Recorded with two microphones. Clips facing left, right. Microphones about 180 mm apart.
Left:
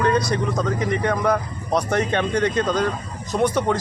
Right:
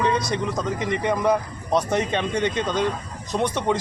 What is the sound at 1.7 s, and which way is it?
A man's voice, centre (ahead or behind).